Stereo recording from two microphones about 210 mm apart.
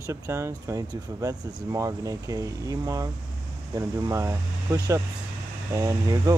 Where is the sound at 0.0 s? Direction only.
15° right (ahead or behind).